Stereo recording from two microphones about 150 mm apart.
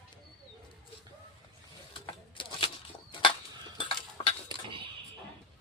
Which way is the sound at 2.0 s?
35° left (ahead or behind).